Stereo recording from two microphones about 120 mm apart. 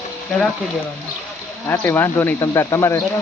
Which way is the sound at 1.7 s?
15° left (ahead or behind).